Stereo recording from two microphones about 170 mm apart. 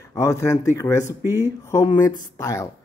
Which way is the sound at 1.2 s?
15° right (ahead or behind).